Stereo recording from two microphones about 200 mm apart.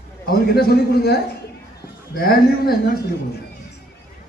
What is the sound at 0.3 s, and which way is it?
A man's voice, 50° left (ahead or behind).